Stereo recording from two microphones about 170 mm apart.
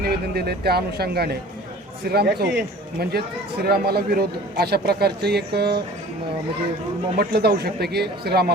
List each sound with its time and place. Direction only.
0.0 s speech: 70° right (ahead or behind)
7.2 s speech: 70° right (ahead or behind)